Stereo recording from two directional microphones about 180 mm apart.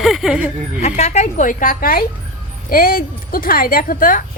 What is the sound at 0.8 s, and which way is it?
Speech, 40° left (ahead or behind).